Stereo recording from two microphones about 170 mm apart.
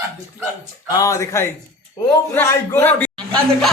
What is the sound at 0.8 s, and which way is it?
A man's voice, 20° left (ahead or behind).